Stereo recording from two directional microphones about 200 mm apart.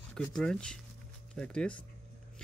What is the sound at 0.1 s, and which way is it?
Speech, 5° left (ahead or behind).